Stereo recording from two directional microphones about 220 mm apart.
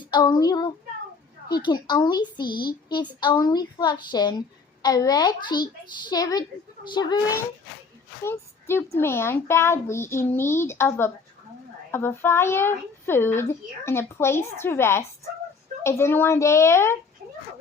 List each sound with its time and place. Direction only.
0.1 s a woman's voice: 20° left (ahead or behind)
8.2 s speech: 10° left (ahead or behind)